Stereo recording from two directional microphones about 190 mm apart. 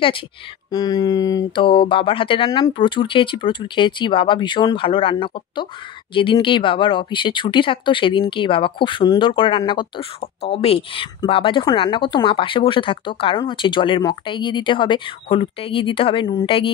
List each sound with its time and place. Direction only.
0.7 s speech: 20° left (ahead or behind)